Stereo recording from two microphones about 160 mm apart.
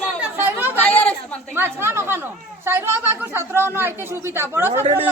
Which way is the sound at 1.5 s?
15° right (ahead or behind).